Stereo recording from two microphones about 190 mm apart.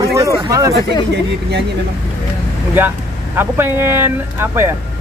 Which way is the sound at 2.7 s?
10° right (ahead or behind).